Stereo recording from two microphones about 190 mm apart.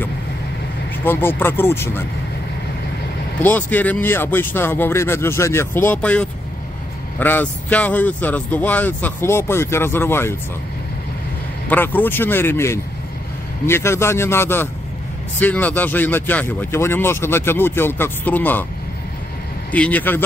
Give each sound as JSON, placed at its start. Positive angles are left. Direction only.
{"t": 1.0, "sound": "speech", "side_deg": 10}
{"t": 3.4, "sound": "speech", "side_deg": 10}
{"t": 11.7, "sound": "speech", "side_deg": 10}
{"t": 19.7, "sound": "speech", "side_deg": 10}